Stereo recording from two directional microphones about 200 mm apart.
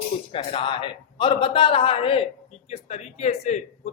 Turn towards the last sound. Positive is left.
turn(degrees=35)  # may be behind; listen again after turning